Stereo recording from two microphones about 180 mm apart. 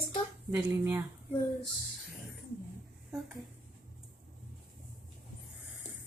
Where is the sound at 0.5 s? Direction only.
15° right (ahead or behind).